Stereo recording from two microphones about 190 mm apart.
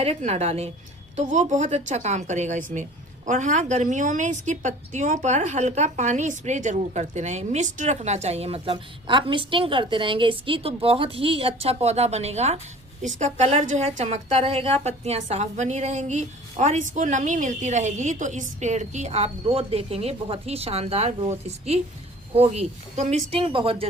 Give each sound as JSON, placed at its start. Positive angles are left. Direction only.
{"t": 0.0, "sound": "a woman's voice", "side_deg": -35}